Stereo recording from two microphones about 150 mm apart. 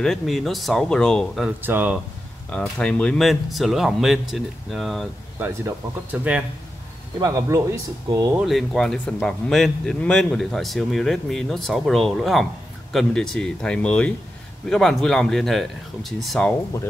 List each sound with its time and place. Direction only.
0.0 s speech: centre (ahead or behind)
1.6 s speech: 10° right (ahead or behind)
2.5 s speech: 5° left (ahead or behind)
7.2 s speech: 20° right (ahead or behind)
8.4 s speech: centre (ahead or behind)